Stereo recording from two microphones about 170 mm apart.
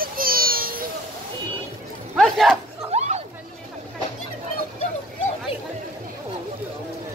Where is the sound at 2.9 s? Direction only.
40° right (ahead or behind).